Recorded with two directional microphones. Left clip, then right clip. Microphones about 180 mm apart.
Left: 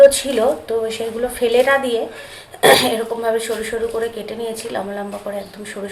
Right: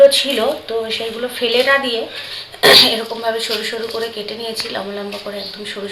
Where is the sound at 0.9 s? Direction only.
25° left (ahead or behind).